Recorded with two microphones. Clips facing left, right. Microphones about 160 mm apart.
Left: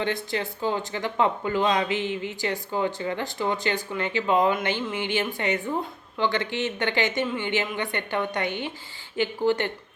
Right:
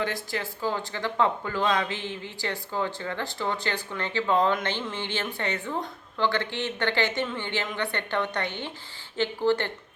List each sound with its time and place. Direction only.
0.0 s speech: 20° left (ahead or behind)